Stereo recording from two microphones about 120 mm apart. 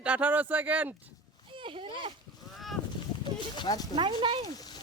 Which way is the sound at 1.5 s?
45° right (ahead or behind).